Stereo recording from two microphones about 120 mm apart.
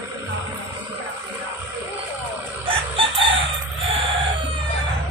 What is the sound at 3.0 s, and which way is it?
Chicken, 45° right (ahead or behind).